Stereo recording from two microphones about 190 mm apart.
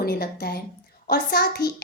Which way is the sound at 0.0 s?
55° left (ahead or behind).